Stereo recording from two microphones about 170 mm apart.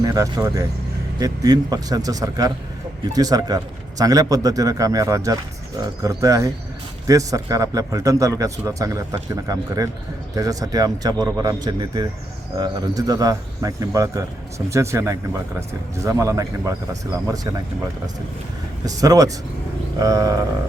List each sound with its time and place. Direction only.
0.0 s a man's voice: 20° right (ahead or behind)
18.9 s a man's voice: 20° right (ahead or behind)